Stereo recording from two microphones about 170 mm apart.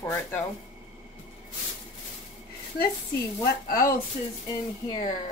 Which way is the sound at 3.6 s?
60° left (ahead or behind).